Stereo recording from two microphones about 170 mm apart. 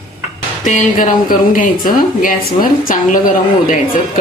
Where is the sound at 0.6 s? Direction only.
50° left (ahead or behind).